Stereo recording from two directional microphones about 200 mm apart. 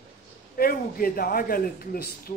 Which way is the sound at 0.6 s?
45° left (ahead or behind).